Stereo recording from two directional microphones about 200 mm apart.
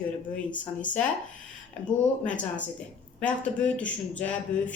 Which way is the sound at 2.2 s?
5° left (ahead or behind).